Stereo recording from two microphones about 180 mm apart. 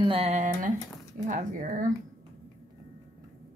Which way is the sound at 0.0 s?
30° right (ahead or behind).